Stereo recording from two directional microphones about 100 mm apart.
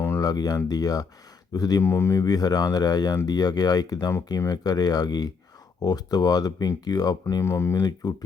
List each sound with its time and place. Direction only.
0.2 s speech: 40° left (ahead or behind)
1.8 s speech: 25° left (ahead or behind)
2.2 s speech: 40° left (ahead or behind)